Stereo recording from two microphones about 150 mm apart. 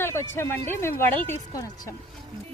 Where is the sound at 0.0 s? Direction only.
15° left (ahead or behind).